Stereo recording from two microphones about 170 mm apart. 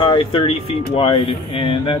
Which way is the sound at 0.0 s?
30° left (ahead or behind).